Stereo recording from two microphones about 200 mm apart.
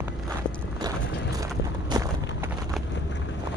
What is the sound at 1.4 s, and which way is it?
Vehicle, 15° right (ahead or behind).